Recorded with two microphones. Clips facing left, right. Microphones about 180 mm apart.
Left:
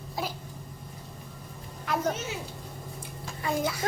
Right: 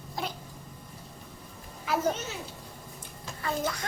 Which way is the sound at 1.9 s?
5° right (ahead or behind).